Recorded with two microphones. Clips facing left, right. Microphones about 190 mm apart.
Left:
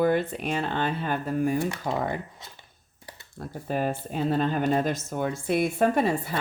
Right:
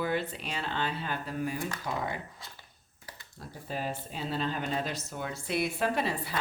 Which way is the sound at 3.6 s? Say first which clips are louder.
Left 8 dB; 55° left (ahead or behind).